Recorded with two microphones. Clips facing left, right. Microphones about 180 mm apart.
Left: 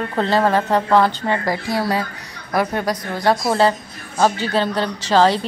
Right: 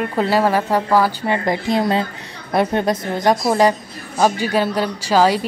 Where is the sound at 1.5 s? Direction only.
20° right (ahead or behind).